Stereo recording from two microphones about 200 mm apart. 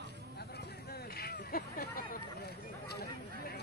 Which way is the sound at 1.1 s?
50° left (ahead or behind).